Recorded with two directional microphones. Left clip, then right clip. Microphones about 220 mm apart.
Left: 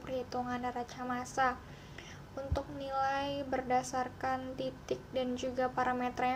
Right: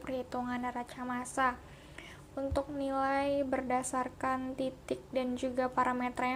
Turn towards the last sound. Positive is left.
turn(degrees=-20)  # may be behind; listen again after turning